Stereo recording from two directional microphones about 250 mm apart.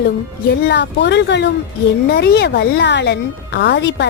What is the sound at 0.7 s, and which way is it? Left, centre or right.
Speech, left.